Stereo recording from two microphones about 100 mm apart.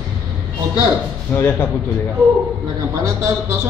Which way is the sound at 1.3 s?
20° left (ahead or behind).